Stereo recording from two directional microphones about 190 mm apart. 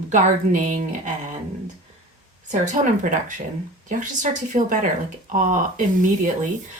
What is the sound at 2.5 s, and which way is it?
Speech, 40° right (ahead or behind).